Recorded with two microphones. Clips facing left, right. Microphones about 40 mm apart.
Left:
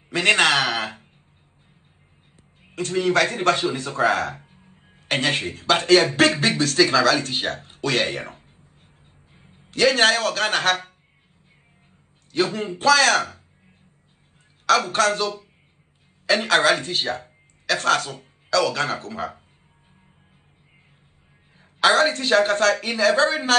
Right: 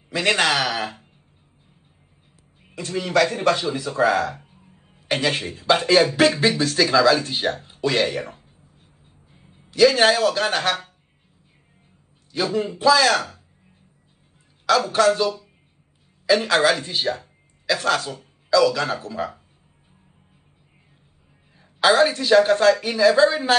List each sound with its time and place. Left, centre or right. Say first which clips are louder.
0.1 s a woman's voice: left 2 dB; left
2.6 s a woman's voice: left 5 dB; left
8.0 s a sound: right 2 dB; left
12.3 s a woman's voice: even; left
14.7 s a woman's voice: right 1 dB; left
21.5 s a woman's voice: right 1 dB; left